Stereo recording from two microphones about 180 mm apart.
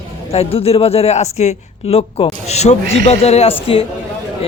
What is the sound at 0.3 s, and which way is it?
A man's voice, 35° left (ahead or behind).